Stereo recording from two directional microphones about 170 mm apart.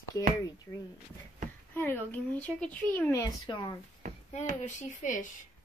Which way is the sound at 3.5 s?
30° left (ahead or behind).